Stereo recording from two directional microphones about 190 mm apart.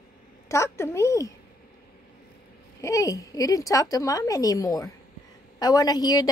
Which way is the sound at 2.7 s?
15° left (ahead or behind).